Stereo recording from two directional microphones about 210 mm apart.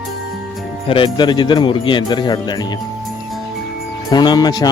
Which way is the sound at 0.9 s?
25° left (ahead or behind).